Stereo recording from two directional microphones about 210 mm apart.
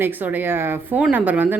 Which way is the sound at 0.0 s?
10° right (ahead or behind).